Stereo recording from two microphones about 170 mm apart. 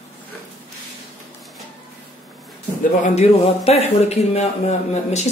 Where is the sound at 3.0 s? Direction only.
40° left (ahead or behind).